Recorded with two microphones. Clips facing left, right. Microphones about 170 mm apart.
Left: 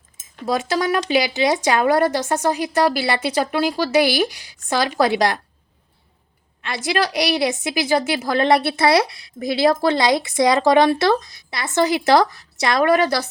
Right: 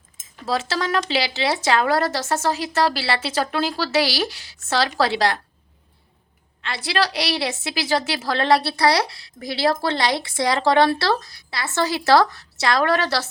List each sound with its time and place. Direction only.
0.4 s speech: 15° left (ahead or behind)
6.6 s a woman's voice: 20° left (ahead or behind)